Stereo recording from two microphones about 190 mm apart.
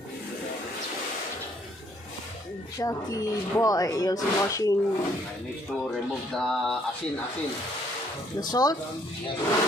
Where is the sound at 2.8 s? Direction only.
20° left (ahead or behind).